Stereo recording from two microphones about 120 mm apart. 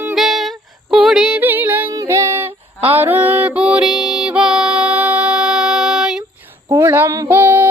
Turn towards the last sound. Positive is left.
turn(degrees=-15)  # may be behind; listen again after turning